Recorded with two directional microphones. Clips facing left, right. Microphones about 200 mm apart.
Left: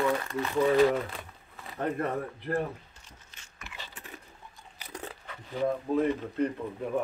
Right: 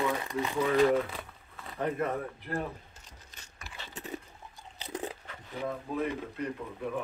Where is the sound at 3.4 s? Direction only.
35° right (ahead or behind).